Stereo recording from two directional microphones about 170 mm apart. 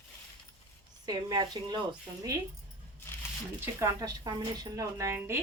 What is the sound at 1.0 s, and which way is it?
Speech, 25° right (ahead or behind).